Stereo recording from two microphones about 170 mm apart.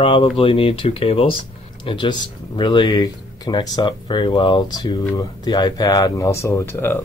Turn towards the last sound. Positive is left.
turn(degrees=15)  # may be behind; listen again after turning